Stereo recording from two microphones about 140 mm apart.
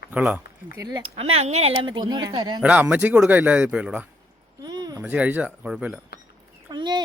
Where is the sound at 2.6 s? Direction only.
10° right (ahead or behind).